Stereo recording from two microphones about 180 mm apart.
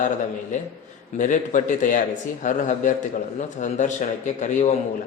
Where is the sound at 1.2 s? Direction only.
45° left (ahead or behind).